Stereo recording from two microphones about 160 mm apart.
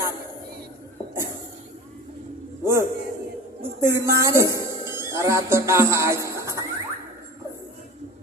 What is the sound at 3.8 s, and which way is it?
Speech, 15° right (ahead or behind).